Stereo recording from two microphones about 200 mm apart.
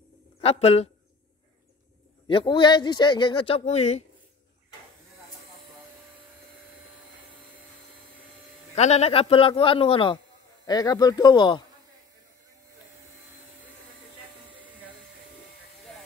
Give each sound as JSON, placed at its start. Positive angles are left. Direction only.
{"t": 0.4, "sound": "speech", "side_deg": 30}
{"t": 2.2, "sound": "a man's voice", "side_deg": 25}
{"t": 8.7, "sound": "a man's voice", "side_deg": 35}